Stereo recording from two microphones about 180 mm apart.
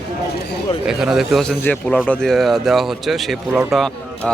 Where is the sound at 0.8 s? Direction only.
5° right (ahead or behind).